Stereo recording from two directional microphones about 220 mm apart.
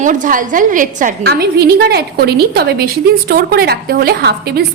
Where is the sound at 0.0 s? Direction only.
35° right (ahead or behind).